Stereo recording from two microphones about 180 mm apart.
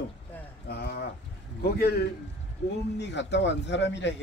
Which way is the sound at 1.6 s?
60° left (ahead or behind).